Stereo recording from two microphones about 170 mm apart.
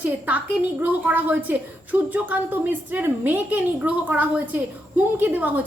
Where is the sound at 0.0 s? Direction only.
10° right (ahead or behind).